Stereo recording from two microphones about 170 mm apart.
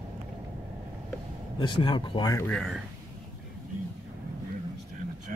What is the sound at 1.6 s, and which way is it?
Speech, 30° left (ahead or behind).